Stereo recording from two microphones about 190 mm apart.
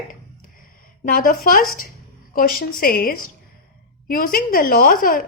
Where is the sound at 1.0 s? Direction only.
50° left (ahead or behind).